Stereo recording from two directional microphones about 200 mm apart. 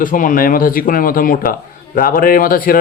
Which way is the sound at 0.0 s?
45° left (ahead or behind).